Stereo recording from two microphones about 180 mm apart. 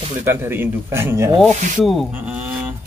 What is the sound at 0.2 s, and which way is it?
Speech, 10° right (ahead or behind).